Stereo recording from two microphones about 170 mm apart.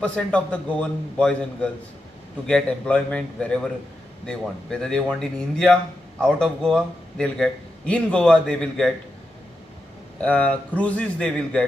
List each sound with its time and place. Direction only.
0.0 s a man's voice: 5° left (ahead or behind)
10.2 s a man's voice: 5° left (ahead or behind)